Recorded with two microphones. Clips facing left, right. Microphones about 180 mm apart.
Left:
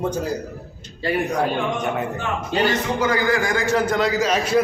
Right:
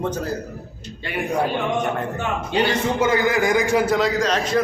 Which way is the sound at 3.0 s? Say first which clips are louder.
Right 2 dB; 25° right (ahead or behind).